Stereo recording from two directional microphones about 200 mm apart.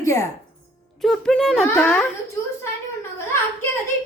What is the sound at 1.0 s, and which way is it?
A woman's voice, 5° left (ahead or behind).